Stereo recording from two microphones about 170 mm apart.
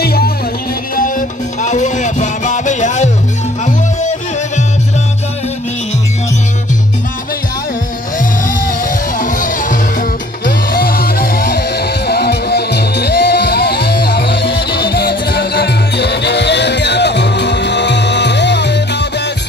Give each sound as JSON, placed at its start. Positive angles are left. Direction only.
{"t": 0.0, "sound": "music", "side_deg": 65}
{"t": 0.9, "sound": "music", "side_deg": 50}
{"t": 9.2, "sound": "music", "side_deg": 50}
{"t": 12.1, "sound": "music", "side_deg": 70}